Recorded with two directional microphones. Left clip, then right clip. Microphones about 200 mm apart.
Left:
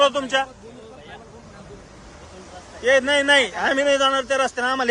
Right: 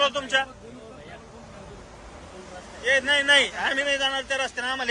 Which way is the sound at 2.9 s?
35° left (ahead or behind).